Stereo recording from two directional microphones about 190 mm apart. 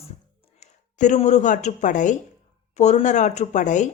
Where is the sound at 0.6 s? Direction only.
40° left (ahead or behind).